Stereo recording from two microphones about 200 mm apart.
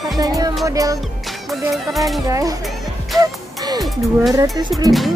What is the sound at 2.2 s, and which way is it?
Speech, 15° right (ahead or behind).